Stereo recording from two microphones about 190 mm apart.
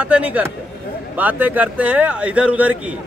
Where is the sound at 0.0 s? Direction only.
5° right (ahead or behind).